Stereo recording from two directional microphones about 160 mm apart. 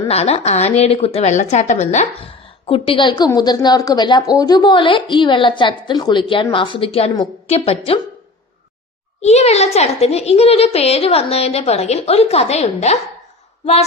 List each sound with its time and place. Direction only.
0.1 s a woman's voice: 40° left (ahead or behind)
9.2 s a woman's voice: 40° left (ahead or behind)